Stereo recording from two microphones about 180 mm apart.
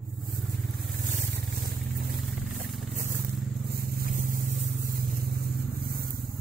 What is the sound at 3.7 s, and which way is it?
Vehicle, 55° right (ahead or behind).